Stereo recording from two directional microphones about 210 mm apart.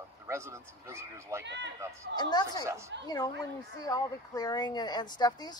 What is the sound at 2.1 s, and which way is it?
Speech, 20° left (ahead or behind).